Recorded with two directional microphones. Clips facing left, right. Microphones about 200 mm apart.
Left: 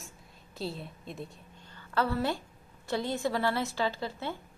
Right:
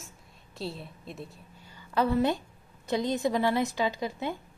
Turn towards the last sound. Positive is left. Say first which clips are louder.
# right 3 dB
turn(degrees=-15)  # may be behind; listen again after turning